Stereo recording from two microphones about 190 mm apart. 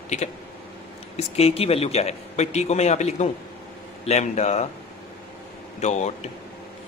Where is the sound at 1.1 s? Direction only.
35° left (ahead or behind).